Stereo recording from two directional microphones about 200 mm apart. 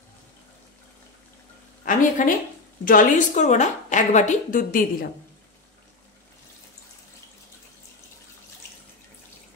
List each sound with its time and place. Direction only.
1.9 s a woman's voice: 40° left (ahead or behind)